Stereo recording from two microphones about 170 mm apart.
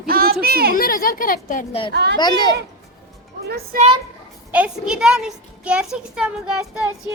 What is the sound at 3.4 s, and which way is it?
Speech, 65° right (ahead or behind).